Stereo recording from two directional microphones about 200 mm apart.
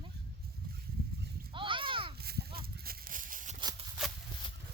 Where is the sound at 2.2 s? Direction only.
50° right (ahead or behind).